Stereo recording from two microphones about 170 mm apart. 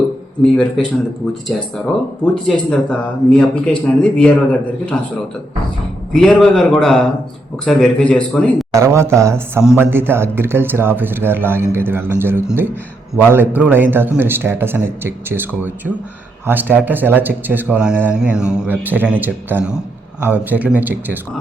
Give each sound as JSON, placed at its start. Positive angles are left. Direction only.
{"t": 0.5, "sound": "speech", "side_deg": 5}
{"t": 6.1, "sound": "speech", "side_deg": 5}
{"t": 8.7, "sound": "speech", "side_deg": -15}